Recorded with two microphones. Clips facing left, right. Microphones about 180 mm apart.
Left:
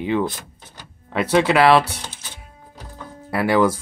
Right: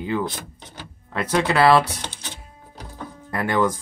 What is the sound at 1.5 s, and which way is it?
Speech, 10° left (ahead or behind).